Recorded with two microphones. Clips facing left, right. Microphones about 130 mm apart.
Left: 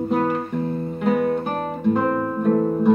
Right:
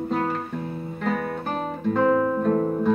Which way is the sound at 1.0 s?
10° left (ahead or behind).